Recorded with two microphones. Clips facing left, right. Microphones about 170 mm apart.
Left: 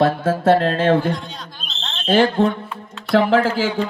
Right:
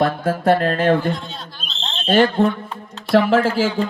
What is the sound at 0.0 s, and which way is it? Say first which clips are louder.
Speech: left 2 dB; 25° left (ahead or behind).